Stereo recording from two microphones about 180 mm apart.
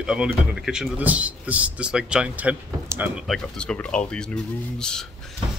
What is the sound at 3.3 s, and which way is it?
Speech, 5° left (ahead or behind).